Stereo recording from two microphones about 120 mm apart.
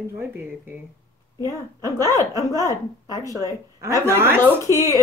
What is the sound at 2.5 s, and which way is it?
Speech, 30° right (ahead or behind).